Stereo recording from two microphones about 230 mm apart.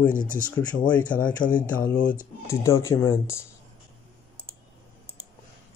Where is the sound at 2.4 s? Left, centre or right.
Centre.